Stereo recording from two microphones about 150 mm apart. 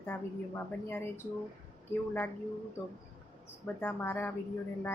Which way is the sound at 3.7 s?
10° left (ahead or behind).